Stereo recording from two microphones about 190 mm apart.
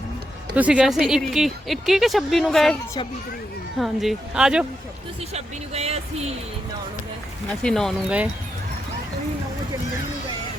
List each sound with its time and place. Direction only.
0.5 s speech: 5° right (ahead or behind)
3.8 s speech: centre (ahead or behind)
5.3 s speech: 35° right (ahead or behind)
7.6 s speech: 5° left (ahead or behind)